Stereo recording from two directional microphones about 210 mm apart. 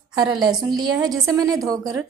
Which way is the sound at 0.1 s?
20° right (ahead or behind).